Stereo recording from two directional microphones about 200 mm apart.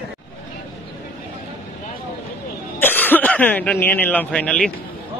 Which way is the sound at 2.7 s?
10° left (ahead or behind).